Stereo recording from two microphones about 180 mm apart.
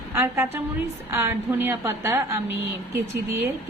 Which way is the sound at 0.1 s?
15° right (ahead or behind).